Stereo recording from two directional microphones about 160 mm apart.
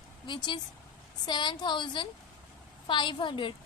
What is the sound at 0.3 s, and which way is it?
A woman's voice, 30° left (ahead or behind).